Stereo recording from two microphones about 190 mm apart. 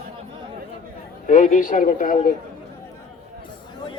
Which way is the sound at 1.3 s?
45° left (ahead or behind).